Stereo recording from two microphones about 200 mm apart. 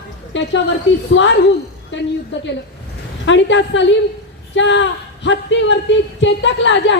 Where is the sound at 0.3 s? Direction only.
65° left (ahead or behind).